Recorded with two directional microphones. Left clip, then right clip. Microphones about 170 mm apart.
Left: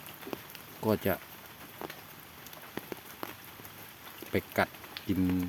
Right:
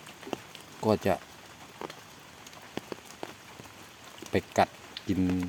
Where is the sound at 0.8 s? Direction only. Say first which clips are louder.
Right 4 dB; 5° right (ahead or behind).